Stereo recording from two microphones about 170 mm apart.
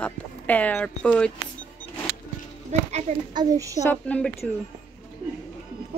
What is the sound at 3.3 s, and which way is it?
Speech, 20° right (ahead or behind).